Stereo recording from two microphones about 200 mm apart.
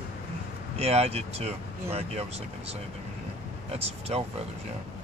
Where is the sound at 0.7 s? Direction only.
30° right (ahead or behind).